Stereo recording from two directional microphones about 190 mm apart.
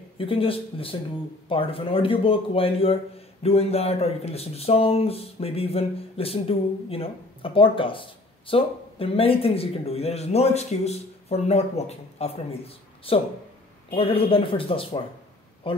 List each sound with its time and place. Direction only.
0.2 s speech: 30° left (ahead or behind)